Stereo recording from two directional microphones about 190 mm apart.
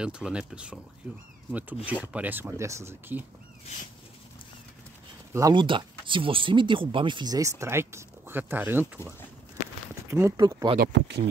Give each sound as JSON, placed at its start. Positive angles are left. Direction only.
{"t": 0.0, "sound": "speech", "side_deg": -5}
{"t": 5.3, "sound": "speech", "side_deg": -20}
{"t": 10.8, "sound": "speech", "side_deg": -65}